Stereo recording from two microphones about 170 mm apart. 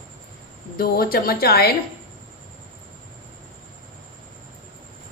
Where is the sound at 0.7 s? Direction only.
60° left (ahead or behind).